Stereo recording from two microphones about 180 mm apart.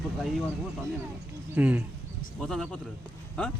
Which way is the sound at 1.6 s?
10° right (ahead or behind).